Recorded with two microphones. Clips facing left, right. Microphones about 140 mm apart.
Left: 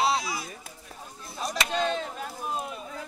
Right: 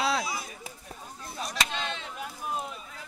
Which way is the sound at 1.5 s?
40° left (ahead or behind).